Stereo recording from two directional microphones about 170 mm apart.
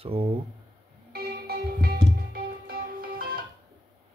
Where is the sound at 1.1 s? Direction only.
65° right (ahead or behind).